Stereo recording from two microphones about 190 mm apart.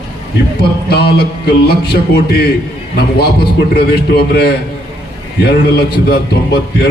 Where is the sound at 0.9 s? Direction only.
55° left (ahead or behind).